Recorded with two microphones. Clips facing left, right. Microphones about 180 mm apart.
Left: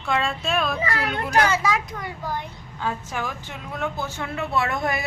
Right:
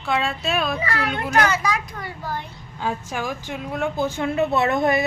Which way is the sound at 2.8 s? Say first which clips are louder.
Right 2 dB; 15° right (ahead or behind).